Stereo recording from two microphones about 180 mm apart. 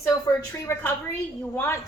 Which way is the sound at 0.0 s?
15° left (ahead or behind).